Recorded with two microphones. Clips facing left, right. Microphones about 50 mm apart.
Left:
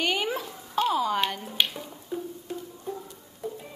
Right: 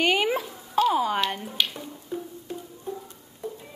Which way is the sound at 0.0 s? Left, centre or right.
Right.